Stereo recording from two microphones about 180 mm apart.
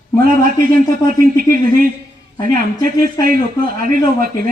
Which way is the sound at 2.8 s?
50° right (ahead or behind).